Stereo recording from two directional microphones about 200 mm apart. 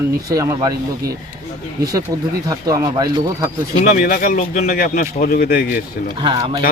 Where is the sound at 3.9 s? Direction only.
45° left (ahead or behind).